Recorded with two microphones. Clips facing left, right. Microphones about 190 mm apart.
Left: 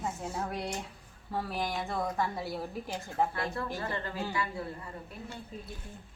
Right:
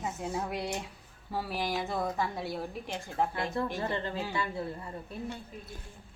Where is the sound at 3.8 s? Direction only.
25° right (ahead or behind).